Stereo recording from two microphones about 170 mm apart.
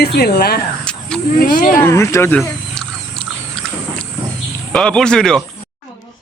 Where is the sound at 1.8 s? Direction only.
15° left (ahead or behind).